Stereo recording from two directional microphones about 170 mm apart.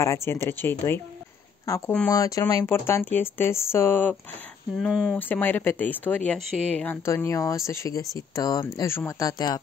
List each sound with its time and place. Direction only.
0.0 s speech: 15° left (ahead or behind)
2.0 s speech: 20° left (ahead or behind)
4.7 s speech: centre (ahead or behind)
5.1 s speech: 10° left (ahead or behind)